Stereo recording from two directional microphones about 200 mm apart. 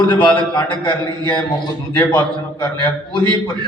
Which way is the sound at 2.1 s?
20° left (ahead or behind).